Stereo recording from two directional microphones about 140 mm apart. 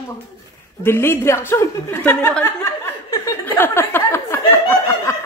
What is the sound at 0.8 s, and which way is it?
A woman's voice, 15° left (ahead or behind).